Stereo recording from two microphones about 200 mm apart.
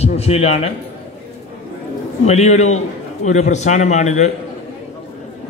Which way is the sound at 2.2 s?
35° left (ahead or behind).